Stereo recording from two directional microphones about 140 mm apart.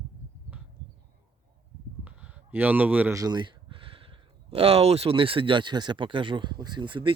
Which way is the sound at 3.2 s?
30° right (ahead or behind).